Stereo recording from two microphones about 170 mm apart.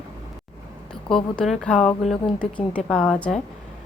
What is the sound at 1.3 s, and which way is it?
A woman's voice, centre (ahead or behind).